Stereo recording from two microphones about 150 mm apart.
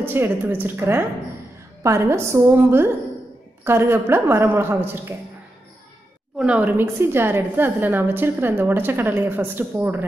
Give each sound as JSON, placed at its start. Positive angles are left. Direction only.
{"t": 0.0, "sound": "a woman's voice", "side_deg": -15}
{"t": 6.3, "sound": "a woman's voice", "side_deg": -5}